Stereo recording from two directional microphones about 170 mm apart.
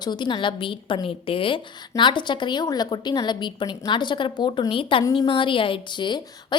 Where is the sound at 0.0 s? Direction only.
25° left (ahead or behind).